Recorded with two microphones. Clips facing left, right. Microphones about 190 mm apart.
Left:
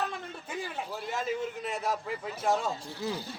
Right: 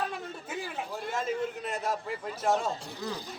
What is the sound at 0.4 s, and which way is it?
A man's voice, 5° right (ahead or behind).